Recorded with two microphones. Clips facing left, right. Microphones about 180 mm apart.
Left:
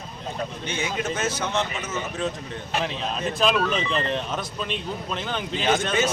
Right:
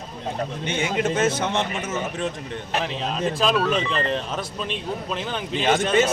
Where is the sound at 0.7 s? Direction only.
55° right (ahead or behind).